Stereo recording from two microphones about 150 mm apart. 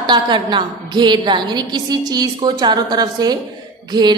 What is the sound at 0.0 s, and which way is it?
A woman's voice, 30° right (ahead or behind).